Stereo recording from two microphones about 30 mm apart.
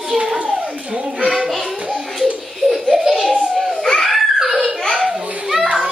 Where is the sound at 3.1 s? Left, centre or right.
Centre.